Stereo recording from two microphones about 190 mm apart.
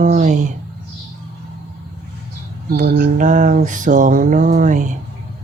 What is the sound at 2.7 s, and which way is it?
Mantra, 55° right (ahead or behind).